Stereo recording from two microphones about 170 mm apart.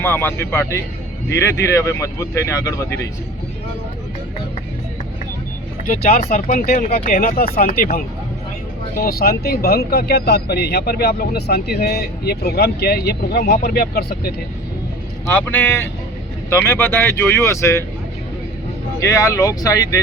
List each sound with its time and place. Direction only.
0.0 s speech: 10° left (ahead or behind)
6.1 s speech: 60° left (ahead or behind)
15.3 s speech: 10° left (ahead or behind)
19.0 s speech: 20° left (ahead or behind)